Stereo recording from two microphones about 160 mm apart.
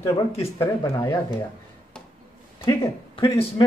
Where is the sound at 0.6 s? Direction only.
20° left (ahead or behind).